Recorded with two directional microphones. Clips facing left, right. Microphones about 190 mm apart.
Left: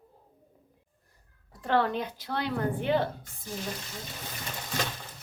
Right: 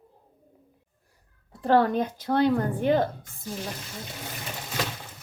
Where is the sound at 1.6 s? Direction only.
40° right (ahead or behind).